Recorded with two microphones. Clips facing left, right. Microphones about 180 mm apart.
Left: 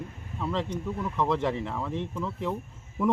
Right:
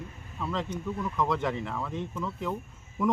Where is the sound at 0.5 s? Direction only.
Centre (ahead or behind).